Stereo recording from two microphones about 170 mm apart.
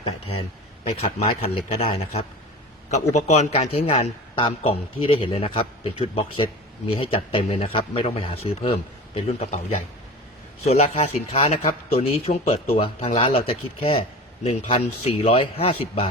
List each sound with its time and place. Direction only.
0.9 s a man's voice: 35° left (ahead or behind)
10.7 s a man's voice: 40° left (ahead or behind)